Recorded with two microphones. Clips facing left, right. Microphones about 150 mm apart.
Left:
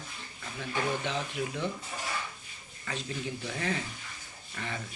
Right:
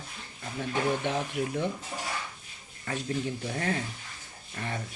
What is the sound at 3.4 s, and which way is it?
Speech, 45° right (ahead or behind).